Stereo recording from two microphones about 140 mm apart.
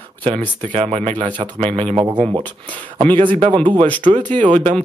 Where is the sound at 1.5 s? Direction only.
50° right (ahead or behind).